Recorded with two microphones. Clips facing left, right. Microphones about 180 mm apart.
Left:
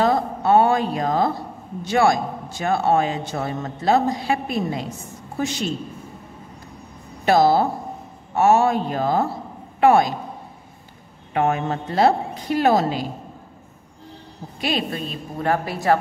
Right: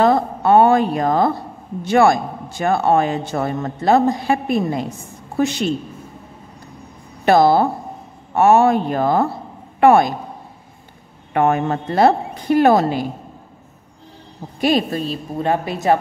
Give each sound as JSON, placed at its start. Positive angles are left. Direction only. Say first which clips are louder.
{"t": 0.0, "sound": "a woman's voice", "louder": "right 4 dB", "side_deg": -55}
{"t": 5.4, "sound": "a woman's voice", "louder": "right 6 dB", "side_deg": -65}
{"t": 7.2, "sound": "a woman's voice", "louder": "right 3 dB", "side_deg": -55}
{"t": 11.3, "sound": "a woman's voice", "louder": "right 4 dB", "side_deg": -55}
{"t": 14.6, "sound": "a woman's voice", "louder": "right 7 dB", "side_deg": -45}
{"t": 15.3, "sound": "a woman's voice", "louder": "right 2 dB", "side_deg": -20}